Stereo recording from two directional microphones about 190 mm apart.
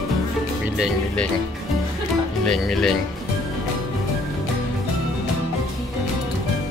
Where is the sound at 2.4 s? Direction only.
Centre (ahead or behind).